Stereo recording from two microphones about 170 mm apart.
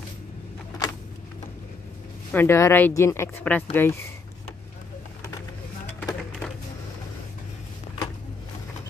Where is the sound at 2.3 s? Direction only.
15° left (ahead or behind).